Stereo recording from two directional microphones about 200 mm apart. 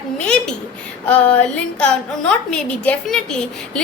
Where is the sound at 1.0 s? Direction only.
5° left (ahead or behind).